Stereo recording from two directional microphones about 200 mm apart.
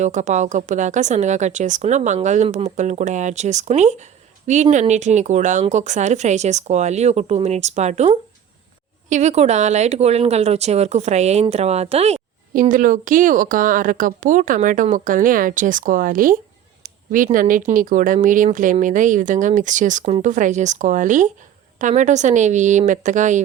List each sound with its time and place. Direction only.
0.0 s speech: 35° right (ahead or behind)
16.8 s a sound: 40° right (ahead or behind)
17.7 s speech: 40° right (ahead or behind)